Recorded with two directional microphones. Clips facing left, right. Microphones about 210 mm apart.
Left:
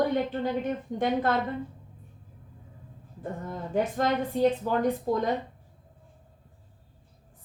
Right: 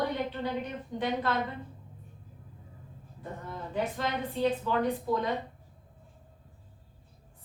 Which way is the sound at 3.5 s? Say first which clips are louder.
Left 4 dB; 45° left (ahead or behind).